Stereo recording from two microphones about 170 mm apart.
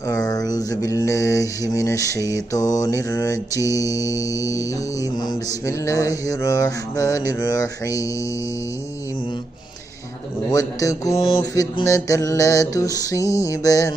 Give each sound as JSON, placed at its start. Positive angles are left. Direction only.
{"t": 0.1, "sound": "mantra", "side_deg": 20}
{"t": 10.5, "sound": "mantra", "side_deg": 20}